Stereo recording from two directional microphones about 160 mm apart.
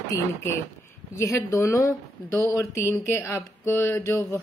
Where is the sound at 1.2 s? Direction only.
20° left (ahead or behind).